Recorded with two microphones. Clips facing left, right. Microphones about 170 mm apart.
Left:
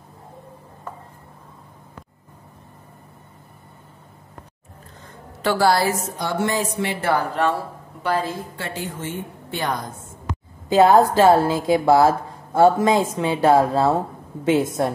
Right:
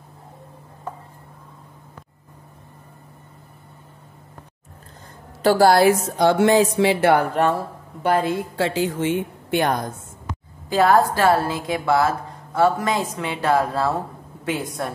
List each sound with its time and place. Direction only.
5.4 s a woman's voice: 45° right (ahead or behind)
5.9 s speech: 75° right (ahead or behind)
7.3 s a woman's voice: 45° right (ahead or behind)
10.7 s speech: 20° left (ahead or behind)